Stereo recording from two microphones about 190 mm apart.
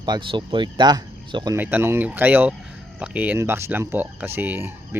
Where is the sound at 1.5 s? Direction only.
10° right (ahead or behind).